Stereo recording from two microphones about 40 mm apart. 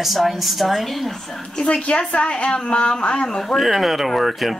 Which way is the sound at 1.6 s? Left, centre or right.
Left.